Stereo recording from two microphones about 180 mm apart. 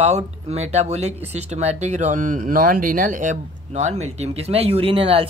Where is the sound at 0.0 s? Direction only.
35° right (ahead or behind).